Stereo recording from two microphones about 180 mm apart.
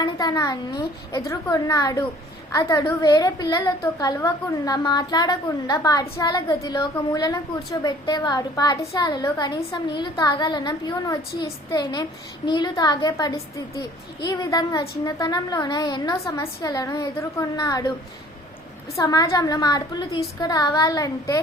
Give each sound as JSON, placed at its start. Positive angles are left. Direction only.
{"t": 0.0, "sound": "a child's voice", "side_deg": 20}
{"t": 18.9, "sound": "a woman's voice", "side_deg": 20}